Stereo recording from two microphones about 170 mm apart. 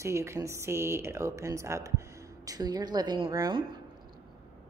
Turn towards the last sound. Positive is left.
turn(degrees=-25)  # may be behind; listen again after turning